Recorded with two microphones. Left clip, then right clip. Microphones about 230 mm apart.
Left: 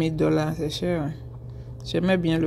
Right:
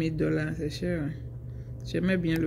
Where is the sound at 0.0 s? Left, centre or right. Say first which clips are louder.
Left 6 dB; centre.